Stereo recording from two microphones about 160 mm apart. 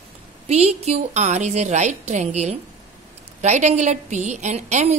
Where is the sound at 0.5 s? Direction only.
40° right (ahead or behind).